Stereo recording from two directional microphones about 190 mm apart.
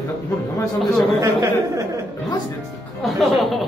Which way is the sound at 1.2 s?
15° right (ahead or behind).